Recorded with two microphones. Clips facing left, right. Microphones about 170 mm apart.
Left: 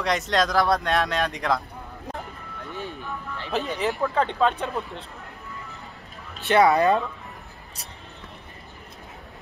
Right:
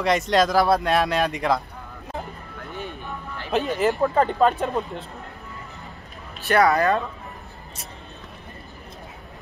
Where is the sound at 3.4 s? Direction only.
Centre (ahead or behind).